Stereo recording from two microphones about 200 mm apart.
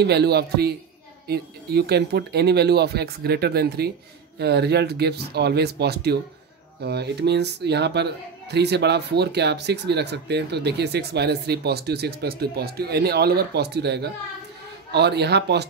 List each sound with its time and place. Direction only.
0.0 s speech: 55° right (ahead or behind)